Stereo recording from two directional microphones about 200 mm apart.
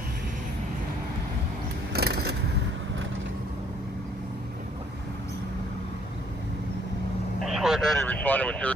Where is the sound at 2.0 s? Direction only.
55° right (ahead or behind).